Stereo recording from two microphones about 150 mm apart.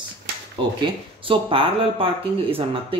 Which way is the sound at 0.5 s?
35° right (ahead or behind).